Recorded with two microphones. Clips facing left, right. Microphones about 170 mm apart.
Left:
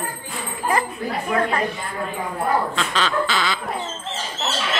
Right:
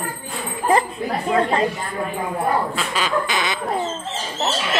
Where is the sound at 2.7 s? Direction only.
10° right (ahead or behind).